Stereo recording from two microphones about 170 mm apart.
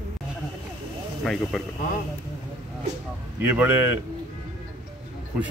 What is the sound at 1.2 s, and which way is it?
Speech, centre (ahead or behind).